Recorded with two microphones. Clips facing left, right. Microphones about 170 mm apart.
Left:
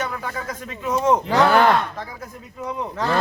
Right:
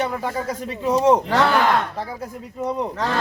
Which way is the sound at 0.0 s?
30° right (ahead or behind).